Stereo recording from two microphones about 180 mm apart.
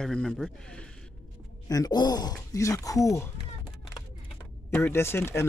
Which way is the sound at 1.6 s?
20° left (ahead or behind).